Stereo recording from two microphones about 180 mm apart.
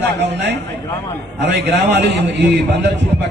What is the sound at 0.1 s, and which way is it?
A man's voice, 75° right (ahead or behind).